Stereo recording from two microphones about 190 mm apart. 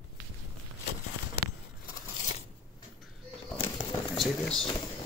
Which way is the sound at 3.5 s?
25° left (ahead or behind).